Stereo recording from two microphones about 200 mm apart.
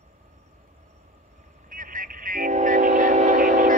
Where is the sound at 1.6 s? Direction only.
45° right (ahead or behind).